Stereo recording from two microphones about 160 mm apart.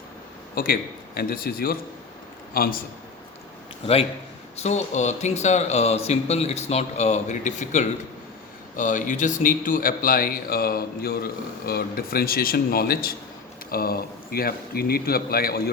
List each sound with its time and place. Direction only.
0.5 s a man's voice: 65° left (ahead or behind)
4.5 s a man's voice: 45° left (ahead or behind); by 15.7 s 75° left (ahead or behind)